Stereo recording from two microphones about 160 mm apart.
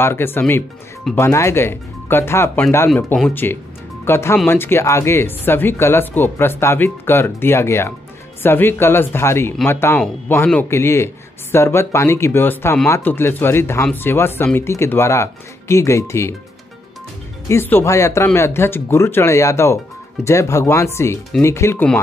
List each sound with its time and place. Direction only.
0.0 s speech: 15° left (ahead or behind)
17.5 s speech: 15° left (ahead or behind)